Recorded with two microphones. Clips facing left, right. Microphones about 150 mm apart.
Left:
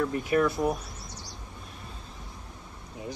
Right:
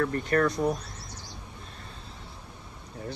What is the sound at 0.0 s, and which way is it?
Speech, 5° left (ahead or behind).